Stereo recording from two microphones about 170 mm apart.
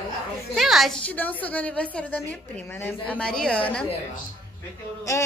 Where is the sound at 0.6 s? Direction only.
Centre (ahead or behind).